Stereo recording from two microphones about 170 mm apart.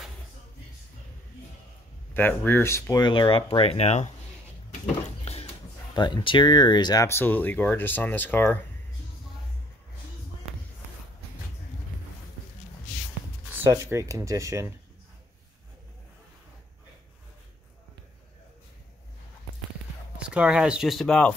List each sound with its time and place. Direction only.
2.1 s speech: 10° left (ahead or behind); by 4.1 s 40° left (ahead or behind)
5.2 s a sound: 35° left (ahead or behind)
5.9 s speech: 25° left (ahead or behind); by 8.5 s 10° left (ahead or behind)
13.5 s speech: 15° right (ahead or behind)
20.2 s speech: 5° right (ahead or behind)